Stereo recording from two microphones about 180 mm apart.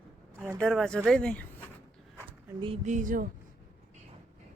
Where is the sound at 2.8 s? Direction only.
45° right (ahead or behind).